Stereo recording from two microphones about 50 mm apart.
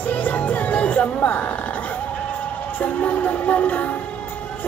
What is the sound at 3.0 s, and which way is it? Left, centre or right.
Music, left.